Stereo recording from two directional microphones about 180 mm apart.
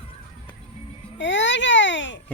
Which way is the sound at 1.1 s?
80° left.